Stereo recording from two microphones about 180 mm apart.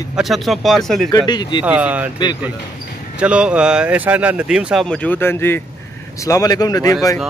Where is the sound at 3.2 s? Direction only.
5° right (ahead or behind); by 6.9 s 20° left (ahead or behind).